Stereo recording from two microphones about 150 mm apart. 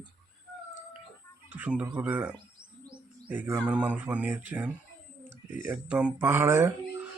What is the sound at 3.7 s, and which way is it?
Speech, 10° right (ahead or behind).